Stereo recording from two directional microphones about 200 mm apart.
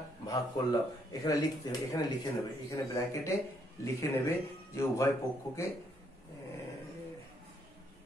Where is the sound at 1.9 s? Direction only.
20° left (ahead or behind).